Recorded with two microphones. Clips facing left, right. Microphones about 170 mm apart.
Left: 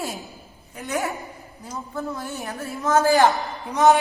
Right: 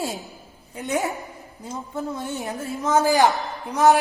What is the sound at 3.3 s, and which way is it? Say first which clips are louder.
Speech: even; centre (ahead or behind).